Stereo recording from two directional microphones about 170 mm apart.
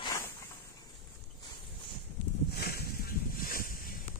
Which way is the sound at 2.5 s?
65° left (ahead or behind).